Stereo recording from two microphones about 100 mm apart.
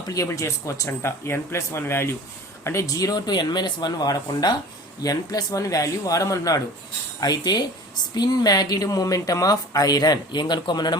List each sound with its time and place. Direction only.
0.1 s speech: 30° left (ahead or behind)